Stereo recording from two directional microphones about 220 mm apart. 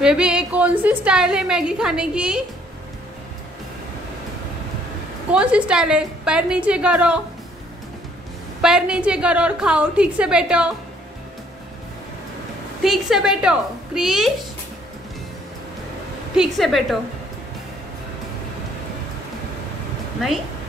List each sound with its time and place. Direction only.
0.0 s a woman's voice: 5° right (ahead or behind)
5.3 s a woman's voice: 5° right (ahead or behind)
8.5 s a woman's voice: 5° right (ahead or behind)
12.8 s a woman's voice: centre (ahead or behind)
16.3 s a woman's voice: centre (ahead or behind)